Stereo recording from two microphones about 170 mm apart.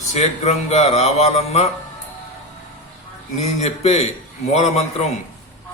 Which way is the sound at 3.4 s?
40° left (ahead or behind).